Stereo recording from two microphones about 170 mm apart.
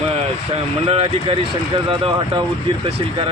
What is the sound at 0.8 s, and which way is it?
Speech, 35° right (ahead or behind).